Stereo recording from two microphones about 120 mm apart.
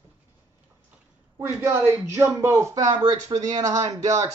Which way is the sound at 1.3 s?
20° right (ahead or behind).